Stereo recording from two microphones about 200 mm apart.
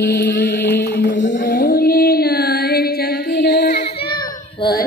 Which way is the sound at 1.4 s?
50° left (ahead or behind).